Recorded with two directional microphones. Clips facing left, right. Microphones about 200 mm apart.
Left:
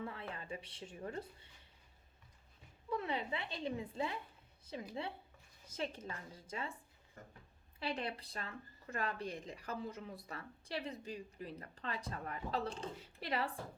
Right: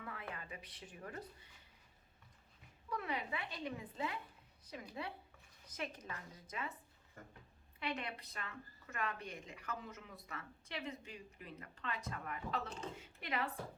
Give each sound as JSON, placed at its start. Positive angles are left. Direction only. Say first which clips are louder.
{"t": 0.0, "sound": "a sound", "louder": "left 3 dB", "side_deg": 30}
{"t": 2.9, "sound": "a woman's voice", "louder": "left 3 dB", "side_deg": 25}
{"t": 7.8, "sound": "speech", "louder": "left 2 dB", "side_deg": 30}